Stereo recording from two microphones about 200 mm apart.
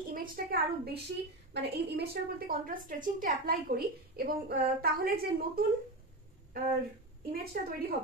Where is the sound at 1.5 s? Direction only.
55° right (ahead or behind).